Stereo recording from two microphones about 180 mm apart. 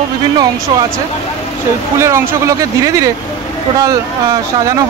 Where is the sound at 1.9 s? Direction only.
15° right (ahead or behind).